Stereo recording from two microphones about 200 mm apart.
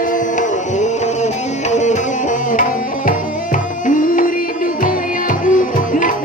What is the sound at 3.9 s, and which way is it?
Music, 40° left (ahead or behind).